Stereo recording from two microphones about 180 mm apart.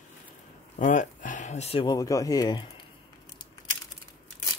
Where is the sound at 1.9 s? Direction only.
20° left (ahead or behind).